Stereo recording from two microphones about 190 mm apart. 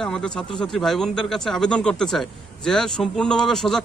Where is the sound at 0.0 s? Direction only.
5° left (ahead or behind).